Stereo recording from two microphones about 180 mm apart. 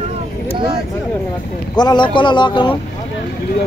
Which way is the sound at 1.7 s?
25° left (ahead or behind).